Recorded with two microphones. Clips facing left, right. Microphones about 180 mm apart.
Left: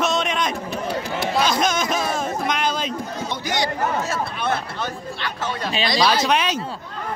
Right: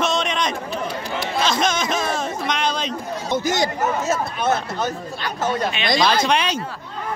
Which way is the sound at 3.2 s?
45° right (ahead or behind).